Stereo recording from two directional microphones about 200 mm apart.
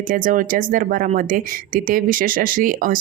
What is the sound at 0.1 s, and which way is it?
Speech, 45° right (ahead or behind).